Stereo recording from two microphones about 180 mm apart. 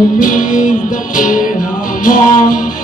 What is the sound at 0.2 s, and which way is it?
Music, 50° left (ahead or behind).